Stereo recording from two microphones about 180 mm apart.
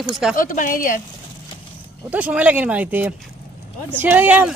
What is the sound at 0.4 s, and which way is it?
Speech, 50° left (ahead or behind).